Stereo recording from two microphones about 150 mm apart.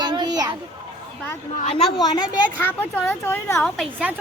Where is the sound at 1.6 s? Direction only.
40° left (ahead or behind).